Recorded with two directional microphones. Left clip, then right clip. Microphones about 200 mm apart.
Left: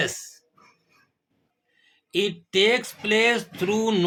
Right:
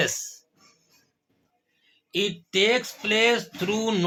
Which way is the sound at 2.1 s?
10° left (ahead or behind).